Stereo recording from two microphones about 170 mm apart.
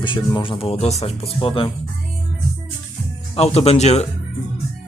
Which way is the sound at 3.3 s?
35° left (ahead or behind).